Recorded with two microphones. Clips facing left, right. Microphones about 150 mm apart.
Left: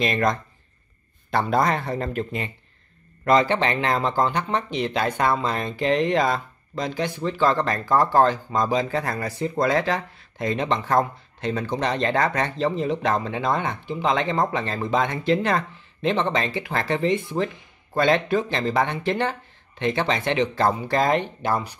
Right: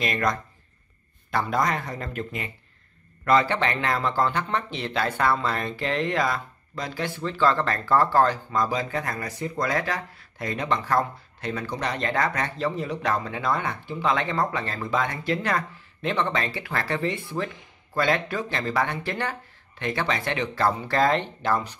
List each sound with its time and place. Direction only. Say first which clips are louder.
0.0 s speech: left 3 dB; 25° left (ahead or behind)